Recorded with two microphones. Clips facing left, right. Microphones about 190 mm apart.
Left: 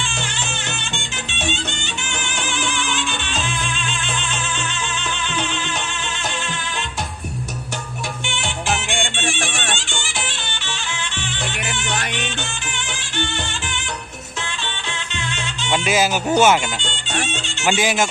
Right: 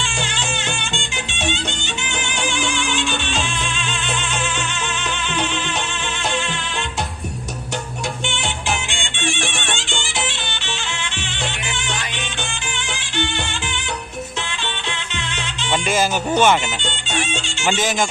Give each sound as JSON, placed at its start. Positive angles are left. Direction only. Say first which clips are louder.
{"t": 11.6, "sound": "music", "louder": "left 2 dB", "side_deg": 55}
{"t": 15.7, "sound": "music", "louder": "left 1 dB", "side_deg": 5}
{"t": 17.7, "sound": "speech", "louder": "left 1 dB", "side_deg": 10}